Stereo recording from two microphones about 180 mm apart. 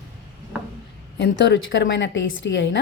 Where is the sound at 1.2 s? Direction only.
80° left.